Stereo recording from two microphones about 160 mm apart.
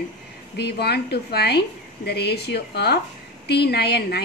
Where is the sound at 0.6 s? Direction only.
90° left.